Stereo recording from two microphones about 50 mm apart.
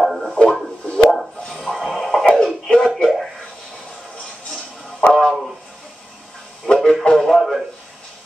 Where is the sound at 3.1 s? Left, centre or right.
Centre.